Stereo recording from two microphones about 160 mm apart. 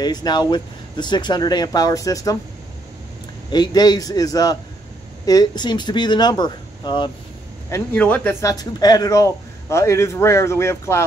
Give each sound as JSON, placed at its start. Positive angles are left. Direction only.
{"t": 0.0, "sound": "speech", "side_deg": 25}
{"t": 3.5, "sound": "speech", "side_deg": 25}
{"t": 7.7, "sound": "speech", "side_deg": 10}